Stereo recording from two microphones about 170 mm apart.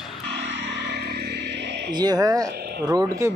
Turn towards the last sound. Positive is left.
turn(degrees=-20)  # may be behind; listen again after turning